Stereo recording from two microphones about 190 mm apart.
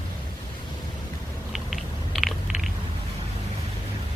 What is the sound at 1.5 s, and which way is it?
Chewing, centre (ahead or behind).